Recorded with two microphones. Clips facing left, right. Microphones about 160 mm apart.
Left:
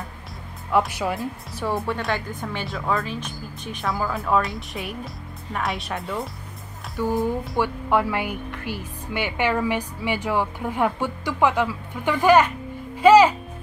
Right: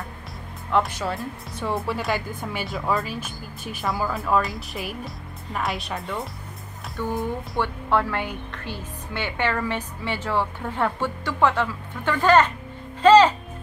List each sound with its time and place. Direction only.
0.7 s a woman's voice: 5° left (ahead or behind)
1.6 s a woman's voice: centre (ahead or behind)
13.0 s music: 10° left (ahead or behind)